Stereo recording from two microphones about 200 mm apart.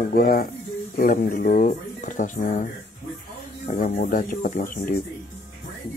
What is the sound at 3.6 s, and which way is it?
Speech, 45° left (ahead or behind).